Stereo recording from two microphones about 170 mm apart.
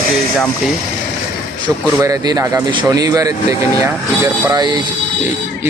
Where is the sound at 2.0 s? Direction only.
20° right (ahead or behind).